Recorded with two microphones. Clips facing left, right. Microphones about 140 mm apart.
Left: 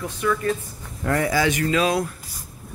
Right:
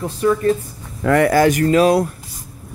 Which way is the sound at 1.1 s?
70° right (ahead or behind).